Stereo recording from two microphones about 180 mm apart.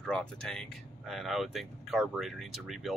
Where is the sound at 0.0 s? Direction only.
5° left (ahead or behind).